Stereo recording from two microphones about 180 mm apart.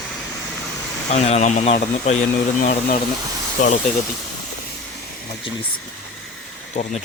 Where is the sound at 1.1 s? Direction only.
40° left (ahead or behind).